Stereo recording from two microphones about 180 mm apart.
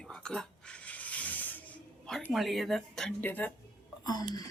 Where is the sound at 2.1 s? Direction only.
Centre (ahead or behind).